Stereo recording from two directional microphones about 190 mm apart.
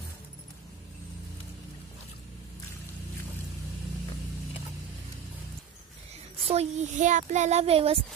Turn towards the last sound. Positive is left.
turn(degrees=-30)  # may be behind; listen again after turning